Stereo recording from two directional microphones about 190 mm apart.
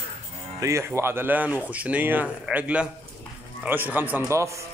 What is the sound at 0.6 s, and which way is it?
A man's voice, 15° right (ahead or behind).